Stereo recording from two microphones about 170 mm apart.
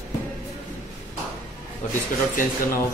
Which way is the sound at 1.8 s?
45° left (ahead or behind).